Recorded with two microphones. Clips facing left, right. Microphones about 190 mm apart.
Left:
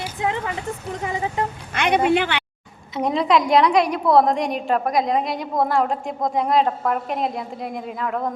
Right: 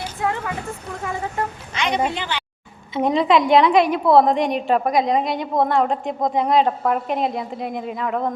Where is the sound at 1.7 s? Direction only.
55° left (ahead or behind).